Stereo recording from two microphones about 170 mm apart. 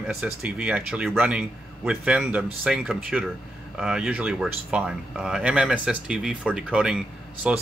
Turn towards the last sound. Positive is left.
turn(degrees=-5)  # may be behind; listen again after turning